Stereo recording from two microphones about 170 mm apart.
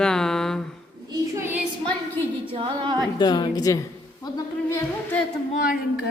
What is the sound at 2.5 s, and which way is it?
Singing, 30° right (ahead or behind).